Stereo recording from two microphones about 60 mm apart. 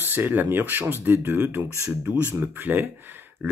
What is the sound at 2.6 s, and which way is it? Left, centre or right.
Speech, right.